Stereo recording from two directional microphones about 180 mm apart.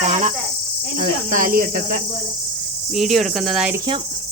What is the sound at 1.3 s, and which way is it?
Speech, 50° right (ahead or behind).